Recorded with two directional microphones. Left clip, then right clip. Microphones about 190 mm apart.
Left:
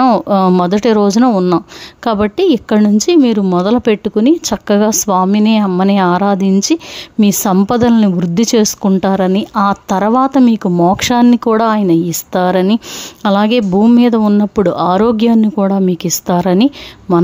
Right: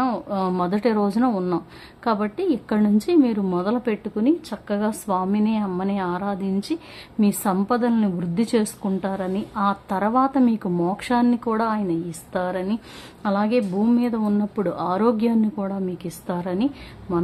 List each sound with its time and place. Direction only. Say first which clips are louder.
0.0 s a woman's voice: left 13 dB; 45° left (ahead or behind)